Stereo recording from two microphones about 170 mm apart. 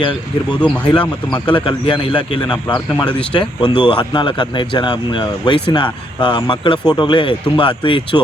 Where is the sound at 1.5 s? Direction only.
30° left (ahead or behind).